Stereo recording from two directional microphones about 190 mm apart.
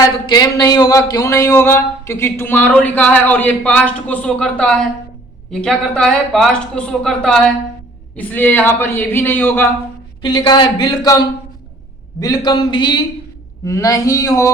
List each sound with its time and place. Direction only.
0.3 s speech: 20° left (ahead or behind)
10.2 s speech: 20° left (ahead or behind)